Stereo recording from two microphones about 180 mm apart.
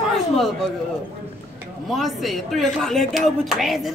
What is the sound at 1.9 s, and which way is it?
A man's voice, centre (ahead or behind).